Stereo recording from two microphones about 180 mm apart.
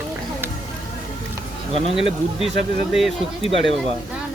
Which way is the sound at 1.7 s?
35° right (ahead or behind).